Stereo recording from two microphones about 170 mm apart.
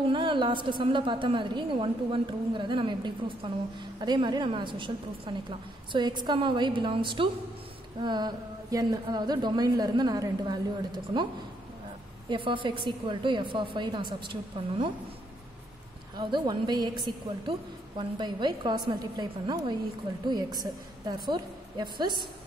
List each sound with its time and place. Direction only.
0.1 s a woman's voice: 30° right (ahead or behind)
12.3 s a woman's voice: 30° right (ahead or behind)
16.2 s a woman's voice: 25° right (ahead or behind)
21.1 s a woman's voice: 25° right (ahead or behind)